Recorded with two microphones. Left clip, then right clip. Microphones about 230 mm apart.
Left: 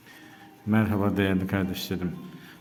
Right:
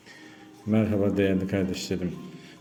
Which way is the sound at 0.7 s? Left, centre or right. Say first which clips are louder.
Right 1 dB; centre.